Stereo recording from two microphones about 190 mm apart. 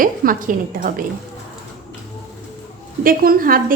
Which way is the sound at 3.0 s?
50° right (ahead or behind).